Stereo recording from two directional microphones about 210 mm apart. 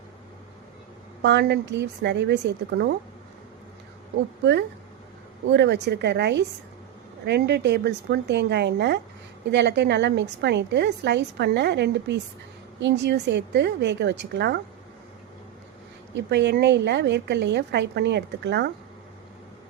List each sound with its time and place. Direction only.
1.2 s a woman's voice: 55° right (ahead or behind)
5.5 s a woman's voice: 55° right (ahead or behind)
16.3 s a woman's voice: 55° right (ahead or behind)